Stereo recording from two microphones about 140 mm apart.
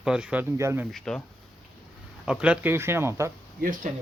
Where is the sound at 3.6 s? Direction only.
75° right (ahead or behind).